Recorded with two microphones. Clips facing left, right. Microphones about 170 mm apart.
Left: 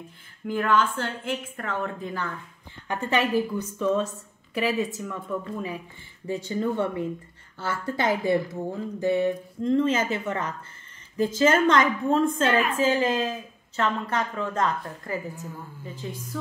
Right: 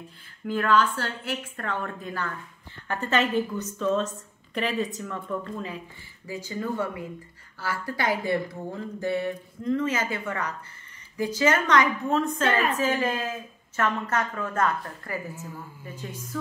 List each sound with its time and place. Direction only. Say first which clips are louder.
0.5 s a woman's voice: even; 15° left (ahead or behind)
6.2 s speech: left 5 dB; 30° left (ahead or behind)